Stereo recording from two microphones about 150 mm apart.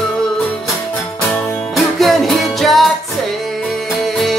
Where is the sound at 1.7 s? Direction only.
Centre (ahead or behind).